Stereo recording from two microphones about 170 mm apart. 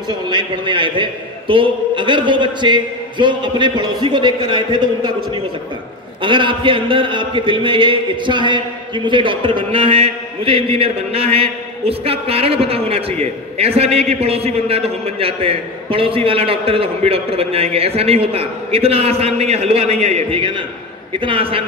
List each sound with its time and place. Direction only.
0.1 s a man's voice: 25° right (ahead or behind)